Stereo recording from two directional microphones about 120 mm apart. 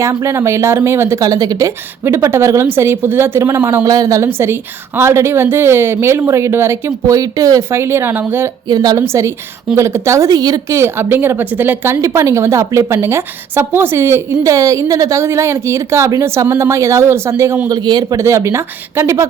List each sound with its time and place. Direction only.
0.0 s speech: 25° right (ahead or behind)
8.6 s speech: 35° right (ahead or behind)
10.8 s speech: 20° right (ahead or behind)
17.7 s a man's voice: 35° right (ahead or behind)
18.2 s speech: 25° right (ahead or behind)